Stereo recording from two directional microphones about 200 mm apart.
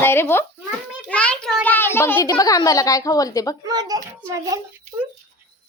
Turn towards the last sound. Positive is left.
turn(degrees=-20)  # may be behind; listen again after turning